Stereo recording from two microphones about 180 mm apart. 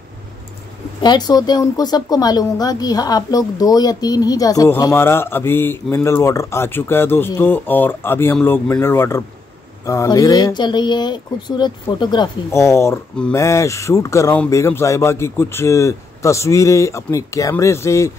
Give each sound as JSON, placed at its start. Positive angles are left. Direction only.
{"t": 1.0, "sound": "speech", "side_deg": 20}